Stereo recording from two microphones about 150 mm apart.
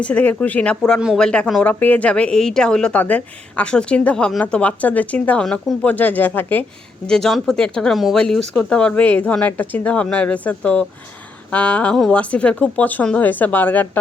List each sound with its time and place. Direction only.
0.0 s speech: 10° left (ahead or behind)